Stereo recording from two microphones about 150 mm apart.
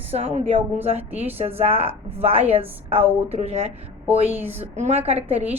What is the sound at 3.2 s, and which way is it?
A woman's voice, 45° right (ahead or behind).